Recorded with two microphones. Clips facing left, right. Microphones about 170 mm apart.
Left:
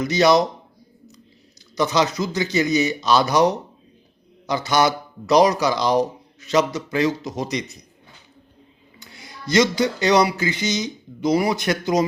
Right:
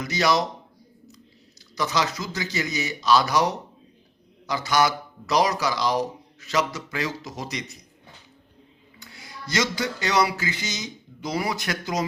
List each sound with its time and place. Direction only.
0.0 s speech: 20° left (ahead or behind)
1.7 s speech: 20° left (ahead or behind)
9.0 s a sound: 20° left (ahead or behind)